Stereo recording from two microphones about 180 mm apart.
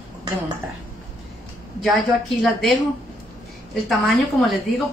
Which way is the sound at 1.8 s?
Centre (ahead or behind).